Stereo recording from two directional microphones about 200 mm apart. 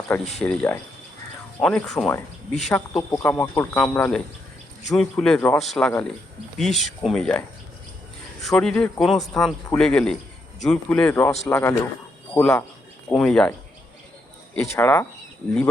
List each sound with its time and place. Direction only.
0.1 s speech: 10° left (ahead or behind)